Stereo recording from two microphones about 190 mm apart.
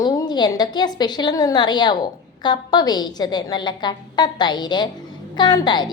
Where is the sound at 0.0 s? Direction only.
20° left (ahead or behind).